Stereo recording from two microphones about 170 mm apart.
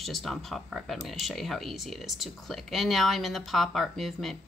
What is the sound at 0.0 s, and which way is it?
A woman's voice, centre (ahead or behind).